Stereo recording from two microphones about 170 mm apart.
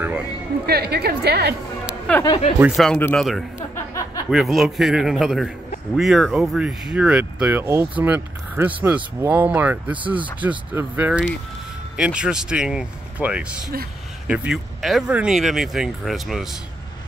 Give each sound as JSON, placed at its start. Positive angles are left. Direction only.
{"t": 0.7, "sound": "a woman's voice", "side_deg": -70}
{"t": 2.2, "sound": "speech", "side_deg": 30}
{"t": 2.6, "sound": "speech", "side_deg": 0}
{"t": 3.5, "sound": "a sound", "side_deg": 15}
{"t": 4.3, "sound": "speech", "side_deg": 0}